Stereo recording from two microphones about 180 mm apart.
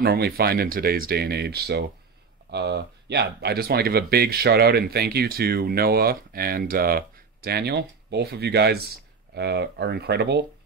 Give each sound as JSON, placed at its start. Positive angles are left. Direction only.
{"t": 0.0, "sound": "speech", "side_deg": -60}